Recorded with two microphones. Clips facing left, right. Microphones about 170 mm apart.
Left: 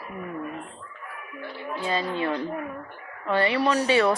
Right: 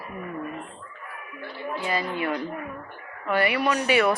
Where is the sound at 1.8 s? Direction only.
25° left (ahead or behind).